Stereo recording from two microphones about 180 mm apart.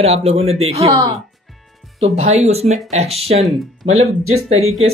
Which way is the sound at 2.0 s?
35° right (ahead or behind).